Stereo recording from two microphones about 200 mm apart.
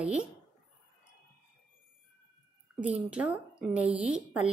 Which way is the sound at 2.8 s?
5° right (ahead or behind).